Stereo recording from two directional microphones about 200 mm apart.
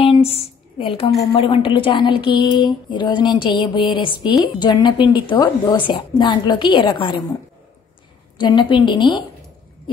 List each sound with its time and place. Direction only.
0.0 s a sound: 30° left (ahead or behind)
1.2 s a woman's voice: 25° left (ahead or behind)
8.4 s a woman's voice: 25° left (ahead or behind)